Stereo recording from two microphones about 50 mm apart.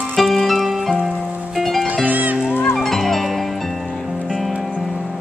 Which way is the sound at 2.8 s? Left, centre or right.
Centre.